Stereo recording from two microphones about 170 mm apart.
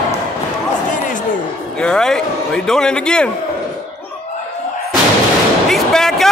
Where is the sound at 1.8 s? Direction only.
5° left (ahead or behind).